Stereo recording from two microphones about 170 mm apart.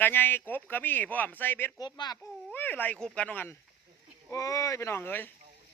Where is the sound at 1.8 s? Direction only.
25° left (ahead or behind).